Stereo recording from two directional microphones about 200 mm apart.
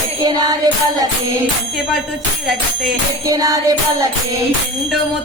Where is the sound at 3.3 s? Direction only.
20° right (ahead or behind).